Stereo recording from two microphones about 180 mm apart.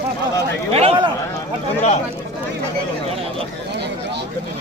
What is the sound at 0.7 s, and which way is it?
Speech, 35° right (ahead or behind).